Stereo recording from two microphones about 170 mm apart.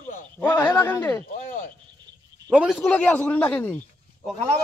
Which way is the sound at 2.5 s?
5° right (ahead or behind).